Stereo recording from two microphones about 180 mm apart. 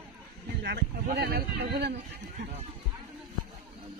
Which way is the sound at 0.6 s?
70° right (ahead or behind).